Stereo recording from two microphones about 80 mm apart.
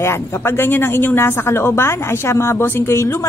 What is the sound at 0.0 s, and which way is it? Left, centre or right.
Speech, left.